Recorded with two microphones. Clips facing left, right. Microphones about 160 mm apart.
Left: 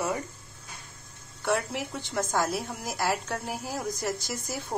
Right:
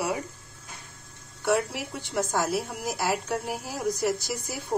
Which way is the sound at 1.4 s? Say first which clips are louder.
Right 3 dB; 15° right (ahead or behind).